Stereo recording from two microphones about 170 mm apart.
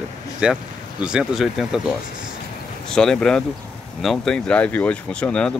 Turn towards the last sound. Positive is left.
turn(degrees=5)  # may be behind; listen again after turning